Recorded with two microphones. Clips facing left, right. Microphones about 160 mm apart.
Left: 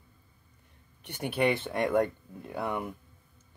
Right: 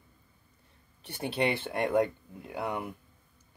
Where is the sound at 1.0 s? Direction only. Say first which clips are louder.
Left 1 dB; 30° right (ahead or behind).